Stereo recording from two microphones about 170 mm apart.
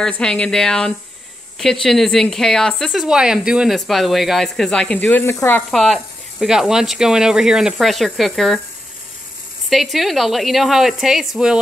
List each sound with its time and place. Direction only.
0.0 s a woman's voice: 5° left (ahead or behind)
5.7 s a woman's voice: centre (ahead or behind)
9.7 s a woman's voice: centre (ahead or behind)